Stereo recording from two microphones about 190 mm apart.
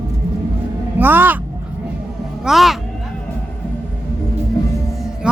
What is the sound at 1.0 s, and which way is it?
Speech, 10° right (ahead or behind).